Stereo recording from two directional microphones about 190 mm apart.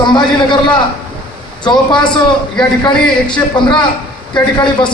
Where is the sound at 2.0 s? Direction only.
25° left (ahead or behind).